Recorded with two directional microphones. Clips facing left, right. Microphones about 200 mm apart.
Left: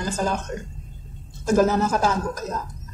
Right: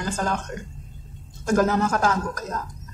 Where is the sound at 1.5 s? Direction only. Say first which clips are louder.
Left 2 dB; 5° left (ahead or behind).